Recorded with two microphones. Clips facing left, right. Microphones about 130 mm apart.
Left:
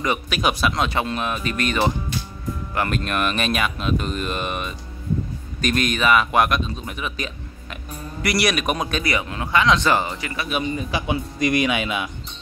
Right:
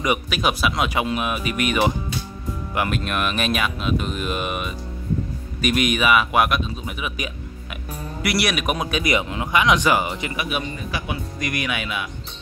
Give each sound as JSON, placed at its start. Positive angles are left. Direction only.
{"t": 0.3, "sound": "speech", "side_deg": 0}
{"t": 9.0, "sound": "speech", "side_deg": -20}
{"t": 10.9, "sound": "speech", "side_deg": 25}